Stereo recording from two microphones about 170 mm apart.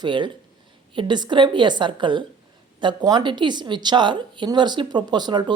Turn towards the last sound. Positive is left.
turn(degrees=-25)  # may be behind; listen again after turning